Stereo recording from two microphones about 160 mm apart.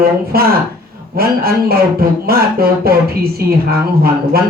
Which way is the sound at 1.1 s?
70° right (ahead or behind).